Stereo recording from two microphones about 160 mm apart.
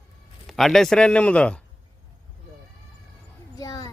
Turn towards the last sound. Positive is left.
turn(degrees=25)  # may be behind; listen again after turning